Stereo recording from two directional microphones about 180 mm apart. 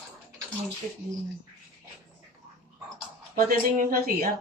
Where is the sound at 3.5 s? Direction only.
50° right (ahead or behind).